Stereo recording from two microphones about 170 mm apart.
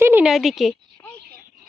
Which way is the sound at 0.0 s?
10° right (ahead or behind).